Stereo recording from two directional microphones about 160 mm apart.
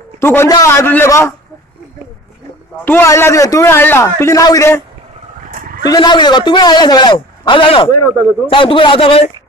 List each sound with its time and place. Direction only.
0.2 s a man's voice: 15° left (ahead or behind)
2.8 s a man's voice: 15° left (ahead or behind)
5.5 s a sound: 55° right (ahead or behind)
5.9 s a man's voice: 25° left (ahead or behind)